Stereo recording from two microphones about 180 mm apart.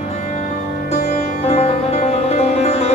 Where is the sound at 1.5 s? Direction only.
35° left (ahead or behind).